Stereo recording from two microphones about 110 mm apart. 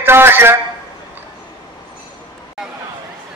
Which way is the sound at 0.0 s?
20° right (ahead or behind).